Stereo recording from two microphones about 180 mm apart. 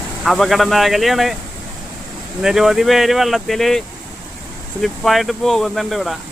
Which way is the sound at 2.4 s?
Centre (ahead or behind).